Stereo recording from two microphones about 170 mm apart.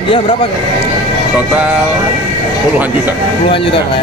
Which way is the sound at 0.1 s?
30° left (ahead or behind).